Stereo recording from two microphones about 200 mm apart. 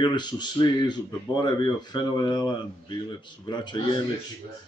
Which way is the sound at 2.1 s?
20° left (ahead or behind).